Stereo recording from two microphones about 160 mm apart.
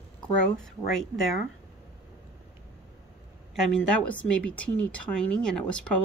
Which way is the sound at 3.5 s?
5° left (ahead or behind).